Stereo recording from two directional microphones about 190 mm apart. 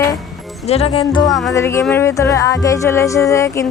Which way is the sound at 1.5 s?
15° left (ahead or behind).